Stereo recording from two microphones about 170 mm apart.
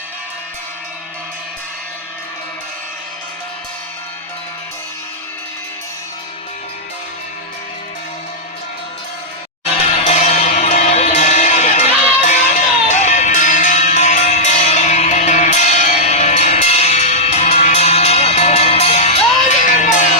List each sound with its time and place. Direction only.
9.9 s music: 40° left (ahead or behind)